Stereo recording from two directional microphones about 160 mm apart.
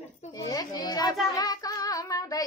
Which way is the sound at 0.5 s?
25° left (ahead or behind).